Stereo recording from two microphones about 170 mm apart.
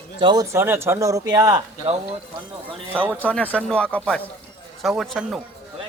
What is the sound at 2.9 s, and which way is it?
Speech, 10° right (ahead or behind).